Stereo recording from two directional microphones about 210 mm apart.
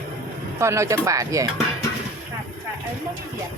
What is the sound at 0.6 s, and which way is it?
Speech, 15° right (ahead or behind).